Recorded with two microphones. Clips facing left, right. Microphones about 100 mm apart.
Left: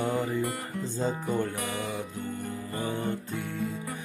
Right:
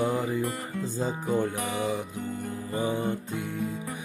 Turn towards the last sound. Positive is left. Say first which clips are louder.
# right 1 dB
turn(degrees=-15)  # may be behind; listen again after turning